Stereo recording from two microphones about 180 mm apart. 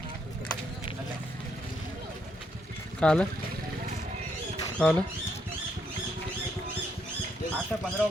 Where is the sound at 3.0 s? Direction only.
5° left (ahead or behind).